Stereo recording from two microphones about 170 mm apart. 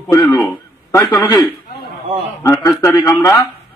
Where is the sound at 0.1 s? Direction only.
20° left (ahead or behind).